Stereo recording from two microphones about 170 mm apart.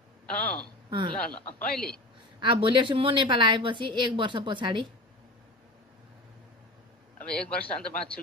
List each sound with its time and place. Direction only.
0.8 s speech: 30° right (ahead or behind)
1.1 s speech: 5° left (ahead or behind)
2.4 s speech: 30° right (ahead or behind)
7.2 s a man's voice: 5° left (ahead or behind)